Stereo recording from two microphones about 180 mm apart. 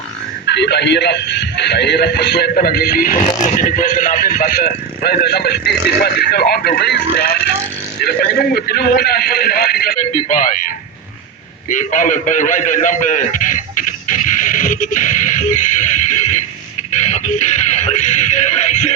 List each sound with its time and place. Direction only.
0.4 s a man's voice: 70° left (ahead or behind); by 10.7 s 45° left (ahead or behind)
11.7 s a man's voice: 45° left (ahead or behind)
16.9 s music: 40° left (ahead or behind)